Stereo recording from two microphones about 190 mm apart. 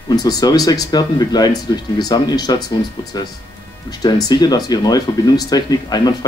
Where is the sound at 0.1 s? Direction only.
20° left (ahead or behind).